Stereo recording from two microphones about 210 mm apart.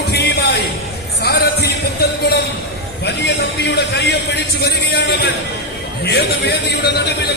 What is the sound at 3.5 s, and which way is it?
A man's voice, 50° left (ahead or behind).